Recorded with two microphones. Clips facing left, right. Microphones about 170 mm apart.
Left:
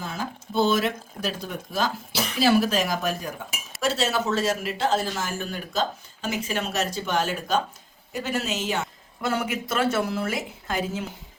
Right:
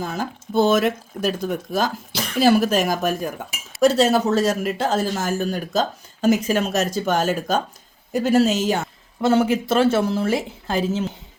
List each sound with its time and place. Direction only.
0.0 s a man's voice: 45° right (ahead or behind); by 11.0 s 30° right (ahead or behind)